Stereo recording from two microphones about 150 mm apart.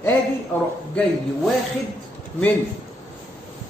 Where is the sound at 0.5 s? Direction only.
10° left (ahead or behind).